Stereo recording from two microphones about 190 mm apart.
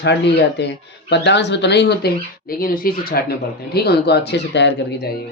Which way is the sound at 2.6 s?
50° left (ahead or behind).